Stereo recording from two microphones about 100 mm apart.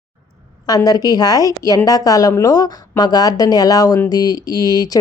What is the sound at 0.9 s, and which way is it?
A woman's voice, 40° left (ahead or behind).